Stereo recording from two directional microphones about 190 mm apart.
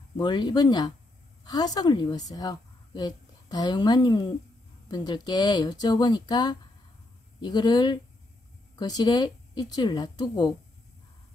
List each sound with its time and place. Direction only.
0.2 s a woman's voice: 25° left (ahead or behind)